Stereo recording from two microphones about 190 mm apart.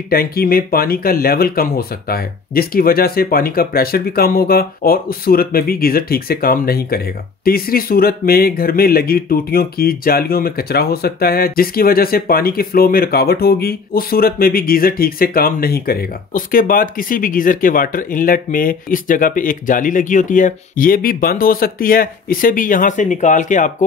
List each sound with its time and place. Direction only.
0.1 s speech: 50° left (ahead or behind)